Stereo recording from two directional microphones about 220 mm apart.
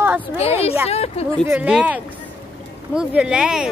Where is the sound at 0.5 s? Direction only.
30° left (ahead or behind).